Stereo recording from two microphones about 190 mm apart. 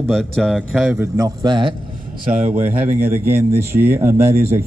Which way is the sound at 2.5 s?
10° right (ahead or behind).